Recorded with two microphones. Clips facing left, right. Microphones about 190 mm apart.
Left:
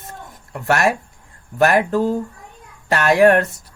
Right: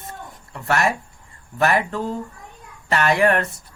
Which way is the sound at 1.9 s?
40° left (ahead or behind).